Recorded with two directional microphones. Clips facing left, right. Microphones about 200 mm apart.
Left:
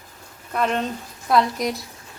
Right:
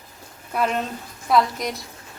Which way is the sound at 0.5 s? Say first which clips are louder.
Left 1 dB; 5° right (ahead or behind).